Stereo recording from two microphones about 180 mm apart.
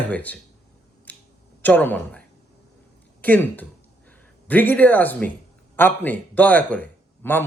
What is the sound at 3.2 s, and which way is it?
Speech, 10° left (ahead or behind).